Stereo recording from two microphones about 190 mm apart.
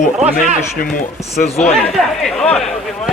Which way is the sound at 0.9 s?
35° left (ahead or behind).